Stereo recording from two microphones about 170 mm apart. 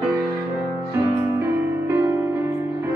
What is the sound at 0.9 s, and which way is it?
Music, 15° right (ahead or behind).